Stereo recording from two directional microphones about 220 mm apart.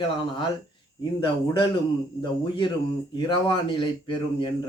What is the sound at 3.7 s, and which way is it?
Speech, 20° left (ahead or behind).